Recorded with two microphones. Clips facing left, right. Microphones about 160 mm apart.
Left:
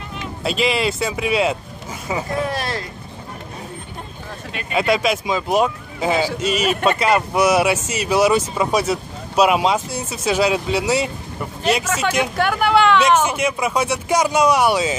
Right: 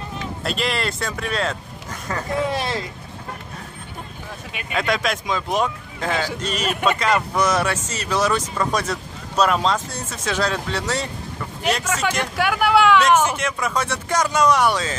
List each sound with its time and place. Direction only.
0.4 s speech: centre (ahead or behind)
2.4 s speech: 20° right (ahead or behind)
4.5 s speech: 15° right (ahead or behind)
4.7 s a man's voice: 5° left (ahead or behind)
12.4 s speech: 5° right (ahead or behind)
13.2 s a man's voice: 10° left (ahead or behind)